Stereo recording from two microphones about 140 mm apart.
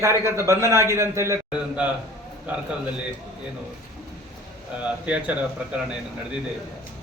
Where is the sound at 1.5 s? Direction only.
10° right (ahead or behind).